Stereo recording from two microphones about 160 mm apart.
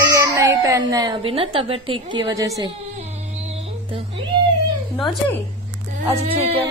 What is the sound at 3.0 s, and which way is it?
Music, 40° right (ahead or behind).